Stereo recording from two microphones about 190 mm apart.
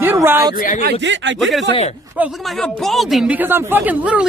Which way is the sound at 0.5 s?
45° left (ahead or behind).